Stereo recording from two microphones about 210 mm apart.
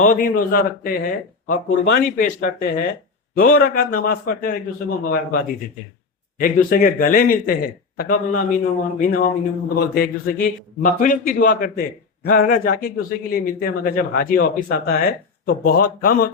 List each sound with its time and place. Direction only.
0.0 s a man's voice: 40° left (ahead or behind)
6.4 s a man's voice: 40° left (ahead or behind)